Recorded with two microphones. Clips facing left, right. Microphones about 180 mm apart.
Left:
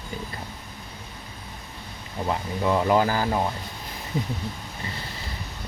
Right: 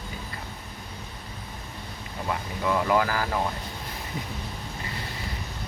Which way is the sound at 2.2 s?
25° left (ahead or behind).